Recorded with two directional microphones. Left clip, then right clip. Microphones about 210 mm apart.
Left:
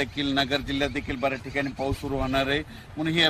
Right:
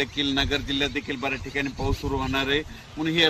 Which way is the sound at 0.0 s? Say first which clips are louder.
Right 1 dB; 25° left (ahead or behind).